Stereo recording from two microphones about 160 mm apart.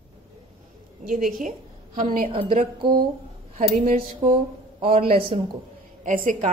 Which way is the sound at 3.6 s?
40° right (ahead or behind).